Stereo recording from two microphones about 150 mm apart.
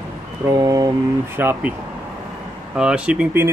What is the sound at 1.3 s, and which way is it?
Speech, 15° right (ahead or behind).